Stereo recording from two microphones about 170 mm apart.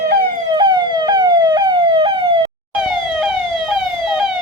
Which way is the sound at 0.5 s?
25° right (ahead or behind).